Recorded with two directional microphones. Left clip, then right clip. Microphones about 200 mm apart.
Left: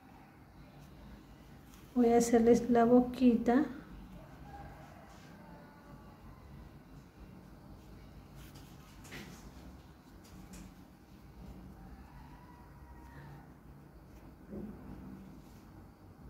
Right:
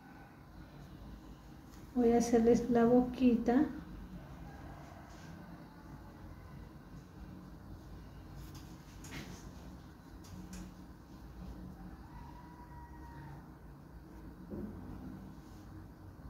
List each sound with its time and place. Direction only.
2.0 s a woman's voice: 35° left (ahead or behind)